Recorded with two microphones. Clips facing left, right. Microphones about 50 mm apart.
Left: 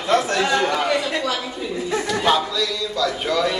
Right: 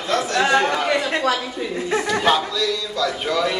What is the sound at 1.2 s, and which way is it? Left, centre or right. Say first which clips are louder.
Speech: right 3 dB; right.